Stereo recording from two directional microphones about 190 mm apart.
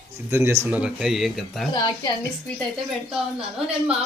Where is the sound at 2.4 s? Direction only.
5° left (ahead or behind).